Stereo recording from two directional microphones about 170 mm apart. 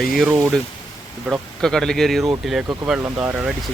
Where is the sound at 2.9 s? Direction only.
10° right (ahead or behind).